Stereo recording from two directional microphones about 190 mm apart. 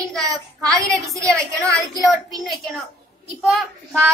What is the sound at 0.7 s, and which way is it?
A woman's voice, 15° right (ahead or behind).